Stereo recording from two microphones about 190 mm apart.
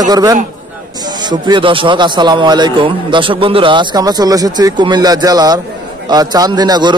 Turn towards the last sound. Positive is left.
turn(degrees=-20)  # may be behind; listen again after turning